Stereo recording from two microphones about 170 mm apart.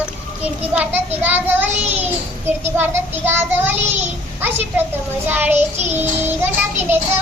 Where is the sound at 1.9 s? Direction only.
10° right (ahead or behind).